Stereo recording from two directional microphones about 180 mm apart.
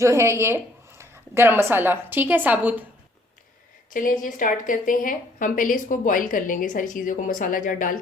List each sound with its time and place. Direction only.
0.0 s speech: 15° right (ahead or behind)
3.9 s a woman's voice: 50° left (ahead or behind)